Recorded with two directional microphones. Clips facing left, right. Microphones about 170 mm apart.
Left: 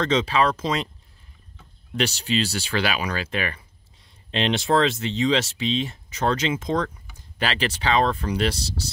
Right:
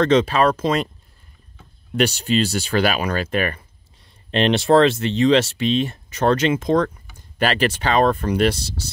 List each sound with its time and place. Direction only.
0.0 s speech: 60° right (ahead or behind)
2.0 s speech: 55° right (ahead or behind)
4.3 s speech: 60° right (ahead or behind)